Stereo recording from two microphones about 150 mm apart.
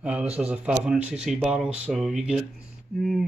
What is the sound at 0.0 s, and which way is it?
Speech, 10° right (ahead or behind).